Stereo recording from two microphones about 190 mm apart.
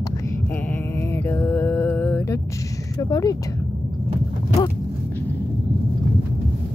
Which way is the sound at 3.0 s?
20° left (ahead or behind).